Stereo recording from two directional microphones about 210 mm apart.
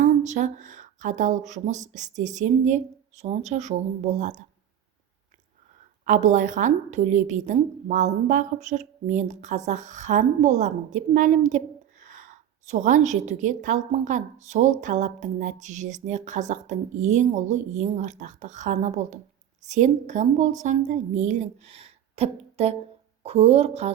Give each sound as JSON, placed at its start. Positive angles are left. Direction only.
{"t": 0.0, "sound": "a woman's voice", "side_deg": -35}
{"t": 6.1, "sound": "a woman's voice", "side_deg": -35}